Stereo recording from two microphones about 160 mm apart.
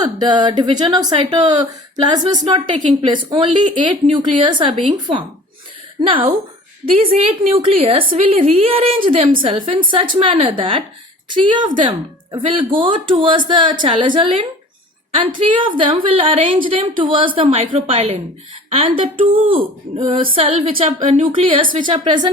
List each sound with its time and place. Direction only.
0.0 s a woman's voice: 25° right (ahead or behind)
6.8 s a woman's voice: 35° right (ahead or behind)